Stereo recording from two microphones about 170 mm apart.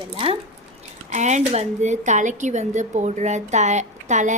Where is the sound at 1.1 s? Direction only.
45° right (ahead or behind).